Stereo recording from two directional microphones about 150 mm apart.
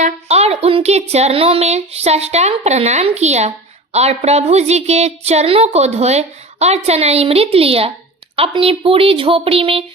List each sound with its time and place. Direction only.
0.0 s a woman's voice: 45° right (ahead or behind)